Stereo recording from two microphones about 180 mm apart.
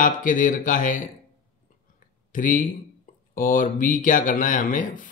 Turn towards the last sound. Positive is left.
turn(degrees=50)  # may be behind; listen again after turning